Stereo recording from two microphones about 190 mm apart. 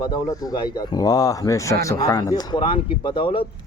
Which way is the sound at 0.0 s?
20° left (ahead or behind).